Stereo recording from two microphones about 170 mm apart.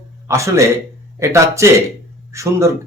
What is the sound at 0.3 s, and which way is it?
Speech, 15° right (ahead or behind).